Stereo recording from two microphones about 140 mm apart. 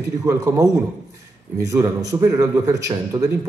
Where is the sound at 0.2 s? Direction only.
20° right (ahead or behind).